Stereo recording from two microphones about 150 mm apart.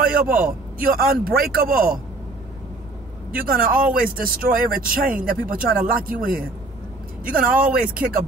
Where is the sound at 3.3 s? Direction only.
70° right (ahead or behind).